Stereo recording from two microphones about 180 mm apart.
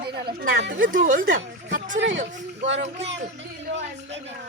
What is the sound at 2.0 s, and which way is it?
Speech, 90° right.